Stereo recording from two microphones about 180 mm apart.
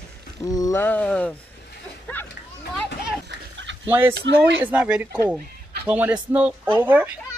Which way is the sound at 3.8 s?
10° right (ahead or behind).